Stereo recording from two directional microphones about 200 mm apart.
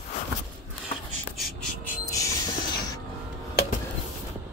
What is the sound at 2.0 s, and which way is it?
Music, 15° left (ahead or behind).